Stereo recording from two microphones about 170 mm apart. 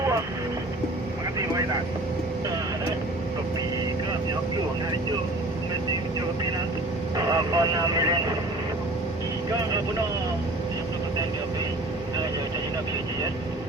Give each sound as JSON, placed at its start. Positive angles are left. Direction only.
{"t": 7.3, "sound": "speech", "side_deg": -20}